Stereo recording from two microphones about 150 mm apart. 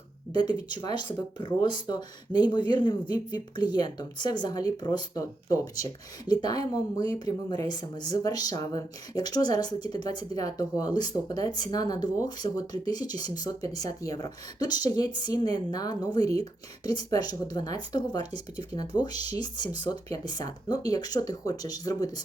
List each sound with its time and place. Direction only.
0.3 s speech: 30° left (ahead or behind)